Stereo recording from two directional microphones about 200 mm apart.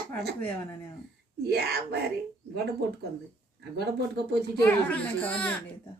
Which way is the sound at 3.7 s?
55° right (ahead or behind).